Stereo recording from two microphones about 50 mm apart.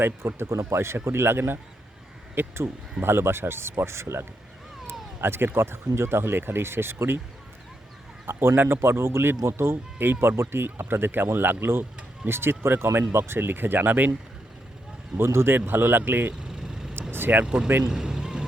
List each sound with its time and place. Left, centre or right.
0.2 s speech: right
1.0 s speech: right
5.2 s speech: right
8.3 s speech: right
10.6 s speech: right
15.2 s speech: right
16.5 s vehicle: centre
17.1 s vehicle: right
17.4 s speech: centre
17.8 s music: centre